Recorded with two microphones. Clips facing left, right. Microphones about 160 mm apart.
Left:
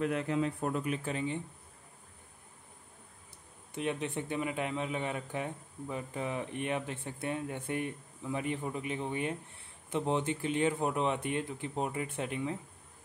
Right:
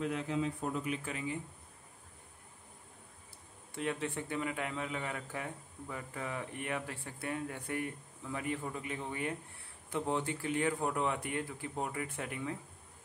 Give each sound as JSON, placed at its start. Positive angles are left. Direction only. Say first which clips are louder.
{"t": 0.0, "sound": "speech", "louder": "left 3 dB", "side_deg": 60}
{"t": 1.0, "sound": "speech", "louder": "left 4 dB", "side_deg": 30}
{"t": 3.7, "sound": "speech", "louder": "left 2 dB", "side_deg": 20}